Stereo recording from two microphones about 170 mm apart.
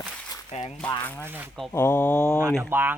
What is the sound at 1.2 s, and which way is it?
Speech, 10° right (ahead or behind).